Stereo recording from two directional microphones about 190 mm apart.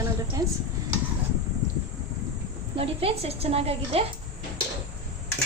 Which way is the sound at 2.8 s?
30° right (ahead or behind).